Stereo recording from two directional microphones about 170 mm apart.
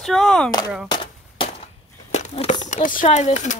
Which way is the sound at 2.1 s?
40° left (ahead or behind).